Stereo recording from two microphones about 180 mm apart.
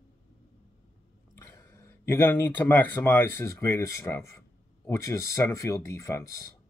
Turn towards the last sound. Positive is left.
turn(degrees=15)  # may be behind; listen again after turning